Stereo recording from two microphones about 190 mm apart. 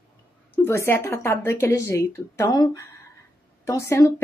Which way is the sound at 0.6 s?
15° left (ahead or behind).